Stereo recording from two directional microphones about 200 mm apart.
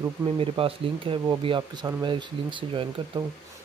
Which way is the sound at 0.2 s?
25° right (ahead or behind).